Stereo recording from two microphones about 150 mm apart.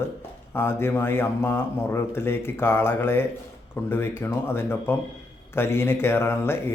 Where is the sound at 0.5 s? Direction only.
15° left (ahead or behind).